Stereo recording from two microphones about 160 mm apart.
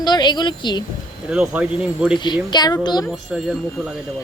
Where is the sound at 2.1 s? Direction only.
30° left (ahead or behind).